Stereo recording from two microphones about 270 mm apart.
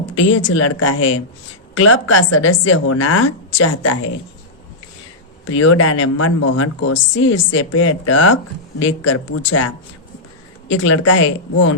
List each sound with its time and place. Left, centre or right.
0.0 s speech: left
2.3 s a woman's voice: left
2.6 s a woman's voice: left
5.5 s a woman's voice: left
6.9 s a woman's voice: left
9.3 s speech: left
10.7 s a woman's voice: left